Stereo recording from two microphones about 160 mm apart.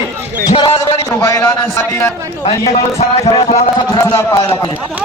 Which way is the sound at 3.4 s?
40° left (ahead or behind).